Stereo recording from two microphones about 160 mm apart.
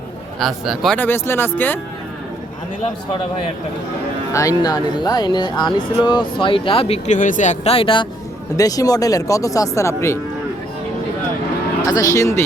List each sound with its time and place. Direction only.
0.3 s speech: centre (ahead or behind)
0.9 s speech: 15° left (ahead or behind)
4.3 s speech: 20° left (ahead or behind); by 7.2 s 40° left (ahead or behind)
7.2 s speech: 50° left (ahead or behind); by 8.0 s 35° left (ahead or behind)
8.5 s speech: 20° left (ahead or behind)
11.9 s speech: 20° left (ahead or behind)